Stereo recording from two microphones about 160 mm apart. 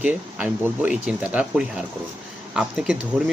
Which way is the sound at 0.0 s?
10° right (ahead or behind).